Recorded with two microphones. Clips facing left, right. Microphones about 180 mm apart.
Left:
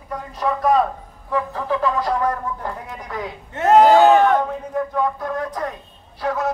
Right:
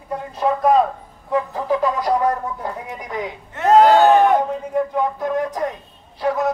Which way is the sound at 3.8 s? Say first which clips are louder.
Left 1 dB; 15° left (ahead or behind).